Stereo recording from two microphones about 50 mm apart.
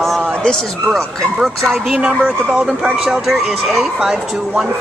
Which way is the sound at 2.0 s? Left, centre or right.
Centre.